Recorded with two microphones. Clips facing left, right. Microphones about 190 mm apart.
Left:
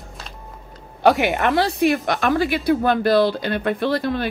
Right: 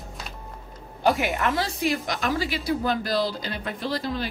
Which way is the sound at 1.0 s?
75° left (ahead or behind).